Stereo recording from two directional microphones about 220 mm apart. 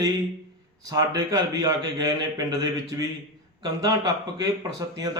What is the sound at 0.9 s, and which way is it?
A man's voice, 15° right (ahead or behind).